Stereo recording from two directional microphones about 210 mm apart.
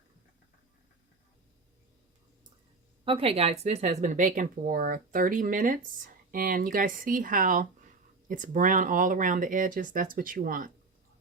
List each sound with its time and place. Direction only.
3.0 s speech: 25° right (ahead or behind); by 10.7 s 45° right (ahead or behind)